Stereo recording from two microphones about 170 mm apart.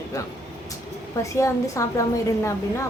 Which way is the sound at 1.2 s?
20° left (ahead or behind).